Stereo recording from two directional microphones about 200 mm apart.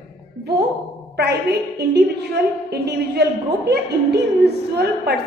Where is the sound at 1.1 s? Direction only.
55° right (ahead or behind).